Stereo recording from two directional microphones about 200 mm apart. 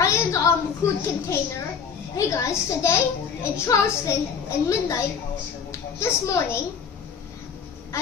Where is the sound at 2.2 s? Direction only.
15° left (ahead or behind).